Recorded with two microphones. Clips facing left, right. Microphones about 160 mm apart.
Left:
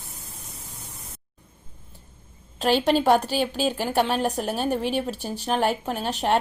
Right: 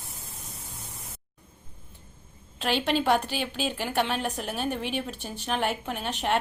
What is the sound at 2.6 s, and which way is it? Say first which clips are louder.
A woman's voice: left 6 dB; 40° left (ahead or behind).